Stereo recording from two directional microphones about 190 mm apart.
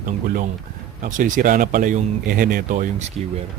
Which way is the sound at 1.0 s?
45° right (ahead or behind).